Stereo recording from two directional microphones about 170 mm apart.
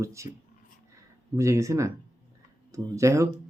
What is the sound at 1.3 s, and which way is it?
Speech, 15° right (ahead or behind).